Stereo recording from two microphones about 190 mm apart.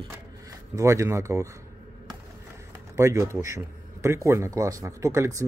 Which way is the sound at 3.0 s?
15° right (ahead or behind).